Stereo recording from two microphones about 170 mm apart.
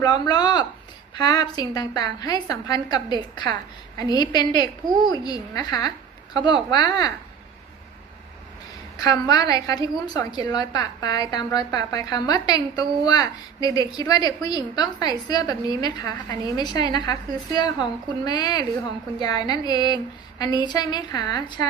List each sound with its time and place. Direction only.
0.0 s a woman's voice: 25° left (ahead or behind)
9.0 s a woman's voice: 20° left (ahead or behind)